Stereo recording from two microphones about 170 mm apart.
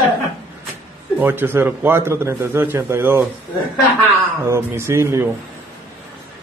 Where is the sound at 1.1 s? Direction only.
10° right (ahead or behind).